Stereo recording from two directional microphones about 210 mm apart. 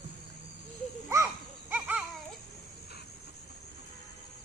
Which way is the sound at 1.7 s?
5° right (ahead or behind).